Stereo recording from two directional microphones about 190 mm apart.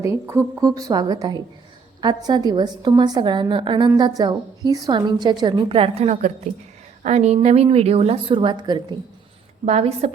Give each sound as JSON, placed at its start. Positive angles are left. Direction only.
{"t": 0.0, "sound": "a woman's voice", "side_deg": -15}
{"t": 9.6, "sound": "a woman's voice", "side_deg": -35}